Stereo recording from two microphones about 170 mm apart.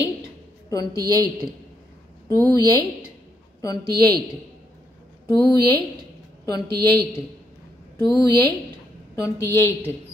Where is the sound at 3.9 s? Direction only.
65° right (ahead or behind).